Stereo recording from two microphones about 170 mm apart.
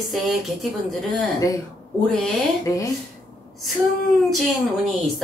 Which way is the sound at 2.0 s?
5° left (ahead or behind).